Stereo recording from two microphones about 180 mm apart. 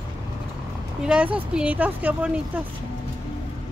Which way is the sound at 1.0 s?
5° right (ahead or behind).